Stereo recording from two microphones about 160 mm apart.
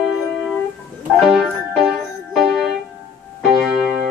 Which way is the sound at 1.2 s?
Centre (ahead or behind).